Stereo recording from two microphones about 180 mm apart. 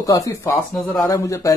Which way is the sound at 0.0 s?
20° left (ahead or behind).